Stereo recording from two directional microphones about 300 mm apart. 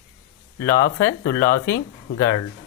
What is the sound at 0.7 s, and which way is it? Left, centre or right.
Speech, left.